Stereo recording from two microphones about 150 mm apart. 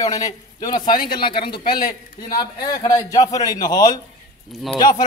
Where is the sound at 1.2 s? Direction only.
35° left (ahead or behind).